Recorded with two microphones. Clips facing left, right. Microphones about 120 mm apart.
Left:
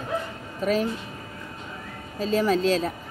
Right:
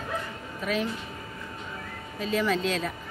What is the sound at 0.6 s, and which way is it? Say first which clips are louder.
Speech: left 5 dB; 40° left (ahead or behind).